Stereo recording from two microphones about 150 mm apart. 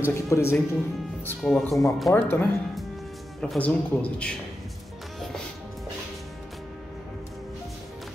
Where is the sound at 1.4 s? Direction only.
5° left (ahead or behind).